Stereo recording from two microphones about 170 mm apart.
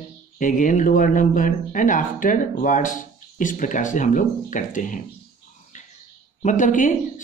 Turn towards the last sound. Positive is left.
turn(degrees=50)  # may be behind; listen again after turning